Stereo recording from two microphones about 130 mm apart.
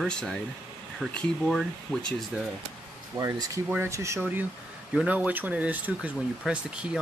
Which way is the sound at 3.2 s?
25° right (ahead or behind).